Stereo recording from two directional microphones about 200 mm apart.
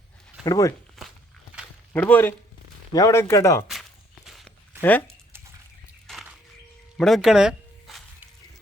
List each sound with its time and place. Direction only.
0.4 s speech: 15° left (ahead or behind)
1.0 s a sound: centre (ahead or behind)
1.9 s speech: 10° left (ahead or behind)
4.3 s walk: centre (ahead or behind)
4.8 s speech: 10° left (ahead or behind)
6.1 s a sound: centre (ahead or behind)
6.9 s zipper: centre (ahead or behind)